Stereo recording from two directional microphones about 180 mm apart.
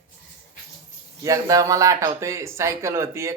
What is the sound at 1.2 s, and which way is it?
Speech, 20° right (ahead or behind).